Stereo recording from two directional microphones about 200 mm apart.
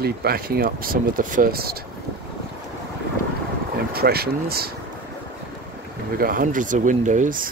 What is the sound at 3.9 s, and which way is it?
Speech, 50° right (ahead or behind).